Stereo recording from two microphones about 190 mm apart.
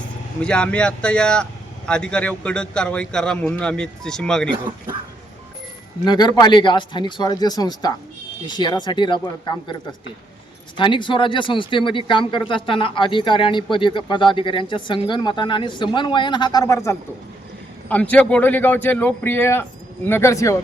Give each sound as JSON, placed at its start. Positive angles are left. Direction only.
{"t": 0.4, "sound": "a man's voice", "side_deg": 5}
{"t": 6.1, "sound": "speech", "side_deg": 20}
{"t": 10.8, "sound": "a man's voice", "side_deg": 25}